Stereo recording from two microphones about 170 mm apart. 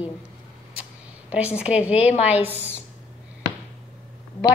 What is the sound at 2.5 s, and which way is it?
Speech, 10° left (ahead or behind).